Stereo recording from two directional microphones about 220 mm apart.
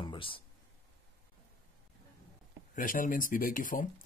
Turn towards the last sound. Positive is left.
turn(degrees=40)  # may be behind; listen again after turning